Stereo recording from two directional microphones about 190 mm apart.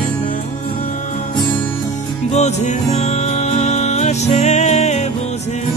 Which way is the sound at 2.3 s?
35° left (ahead or behind).